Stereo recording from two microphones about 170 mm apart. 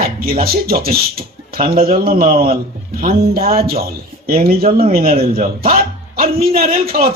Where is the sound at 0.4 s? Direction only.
60° right (ahead or behind).